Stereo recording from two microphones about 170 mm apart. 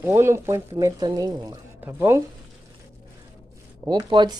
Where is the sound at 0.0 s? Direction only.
15° right (ahead or behind).